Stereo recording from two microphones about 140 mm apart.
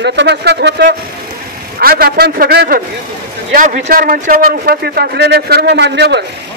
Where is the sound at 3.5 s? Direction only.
65° right (ahead or behind); by 5.1 s 90° right.